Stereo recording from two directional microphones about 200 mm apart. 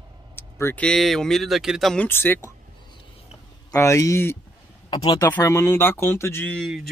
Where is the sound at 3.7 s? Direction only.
15° left (ahead or behind).